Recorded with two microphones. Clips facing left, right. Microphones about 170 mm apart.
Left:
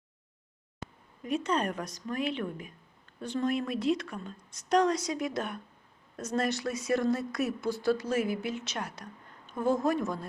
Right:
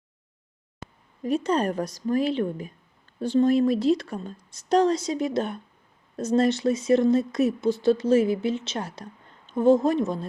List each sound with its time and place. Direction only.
1.2 s a woman's voice: 35° right (ahead or behind)